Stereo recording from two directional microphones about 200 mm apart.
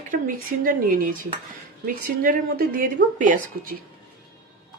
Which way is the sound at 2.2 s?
45° right (ahead or behind).